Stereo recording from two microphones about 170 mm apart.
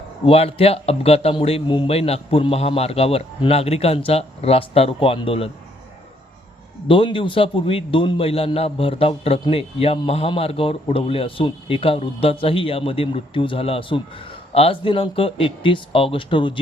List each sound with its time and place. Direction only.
0.3 s speech: 35° left (ahead or behind)
6.8 s speech: 30° left (ahead or behind)